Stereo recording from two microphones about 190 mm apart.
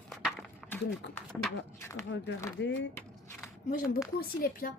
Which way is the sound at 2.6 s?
70° left (ahead or behind).